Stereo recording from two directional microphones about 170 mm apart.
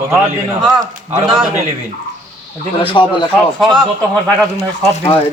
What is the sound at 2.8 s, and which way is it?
Speech, 30° left (ahead or behind).